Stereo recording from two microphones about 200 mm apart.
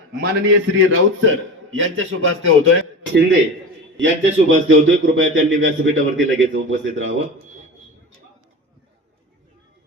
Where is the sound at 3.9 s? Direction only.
65° right (ahead or behind).